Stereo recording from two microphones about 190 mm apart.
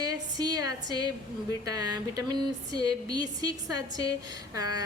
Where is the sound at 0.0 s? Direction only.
20° right (ahead or behind).